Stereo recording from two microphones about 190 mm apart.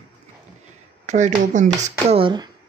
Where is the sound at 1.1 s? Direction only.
40° right (ahead or behind).